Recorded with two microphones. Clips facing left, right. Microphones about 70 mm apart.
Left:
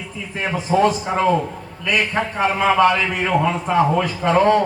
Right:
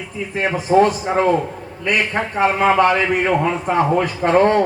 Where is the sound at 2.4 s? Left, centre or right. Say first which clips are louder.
Right 1 dB; right.